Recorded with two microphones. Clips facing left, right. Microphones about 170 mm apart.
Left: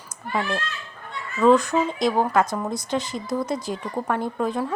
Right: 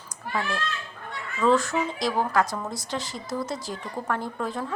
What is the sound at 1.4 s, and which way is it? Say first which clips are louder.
A woman's voice: left 5 dB; 20° left (ahead or behind).